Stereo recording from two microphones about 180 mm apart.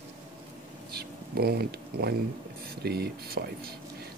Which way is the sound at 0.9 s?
60° right (ahead or behind).